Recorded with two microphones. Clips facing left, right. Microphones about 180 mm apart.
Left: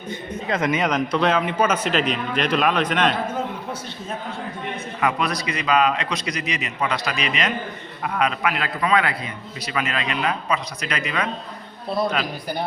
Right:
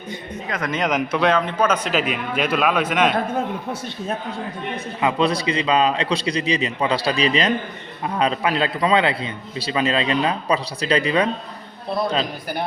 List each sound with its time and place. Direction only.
0.7 s a man's voice: centre (ahead or behind)
1.9 s a man's voice: 5° right (ahead or behind)
4.9 s a man's voice: 25° right (ahead or behind)